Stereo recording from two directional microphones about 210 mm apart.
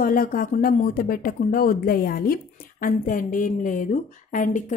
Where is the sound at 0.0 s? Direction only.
40° left (ahead or behind).